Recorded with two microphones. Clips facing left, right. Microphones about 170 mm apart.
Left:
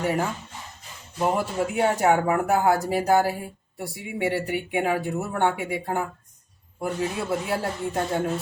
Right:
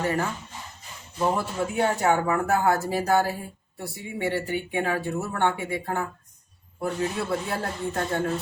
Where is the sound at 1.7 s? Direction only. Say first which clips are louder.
Left 2 dB; 10° left (ahead or behind).